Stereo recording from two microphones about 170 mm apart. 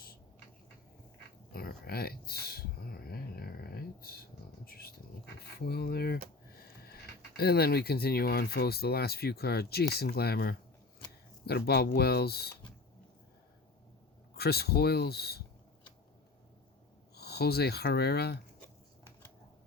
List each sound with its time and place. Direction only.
1.5 s a sound: 60° left (ahead or behind)
7.3 s speech: 65° left (ahead or behind)
14.3 s speech: 70° left (ahead or behind)
17.2 s speech: 70° left (ahead or behind)